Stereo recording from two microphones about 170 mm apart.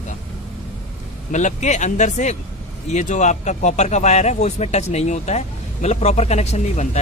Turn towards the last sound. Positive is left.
turn(degrees=40)  # may be behind; listen again after turning